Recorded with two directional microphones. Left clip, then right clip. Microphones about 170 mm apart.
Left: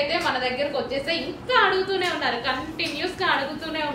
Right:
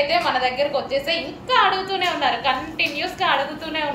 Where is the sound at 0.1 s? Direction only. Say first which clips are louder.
Right 4 dB; 15° left (ahead or behind).